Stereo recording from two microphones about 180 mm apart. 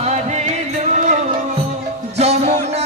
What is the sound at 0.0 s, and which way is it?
Music, 40° right (ahead or behind).